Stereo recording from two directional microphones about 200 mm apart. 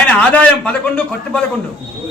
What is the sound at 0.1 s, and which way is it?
A man's voice, 5° left (ahead or behind).